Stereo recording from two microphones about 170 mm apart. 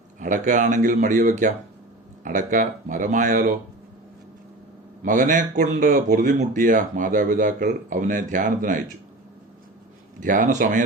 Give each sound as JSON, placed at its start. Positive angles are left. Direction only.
{"t": 0.2, "sound": "speech", "side_deg": -50}
{"t": 5.0, "sound": "speech", "side_deg": -50}
{"t": 10.2, "sound": "speech", "side_deg": -50}